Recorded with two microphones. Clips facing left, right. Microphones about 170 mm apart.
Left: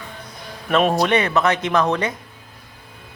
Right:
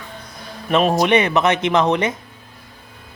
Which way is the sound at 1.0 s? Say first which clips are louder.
Right 2 dB; 20° right (ahead or behind).